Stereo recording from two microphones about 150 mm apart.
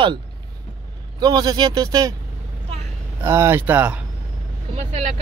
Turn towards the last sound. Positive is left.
turn(degrees=-45)  # may be behind; listen again after turning